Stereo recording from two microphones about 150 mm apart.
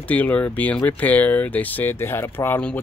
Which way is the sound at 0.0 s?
10° left (ahead or behind).